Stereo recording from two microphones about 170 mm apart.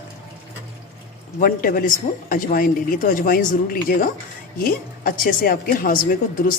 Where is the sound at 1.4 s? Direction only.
55° left (ahead or behind).